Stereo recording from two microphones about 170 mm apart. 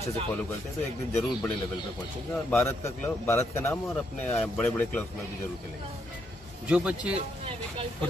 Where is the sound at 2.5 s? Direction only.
15° left (ahead or behind).